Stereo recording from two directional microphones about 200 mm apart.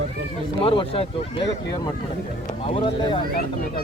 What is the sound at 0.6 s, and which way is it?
Speech, 25° left (ahead or behind).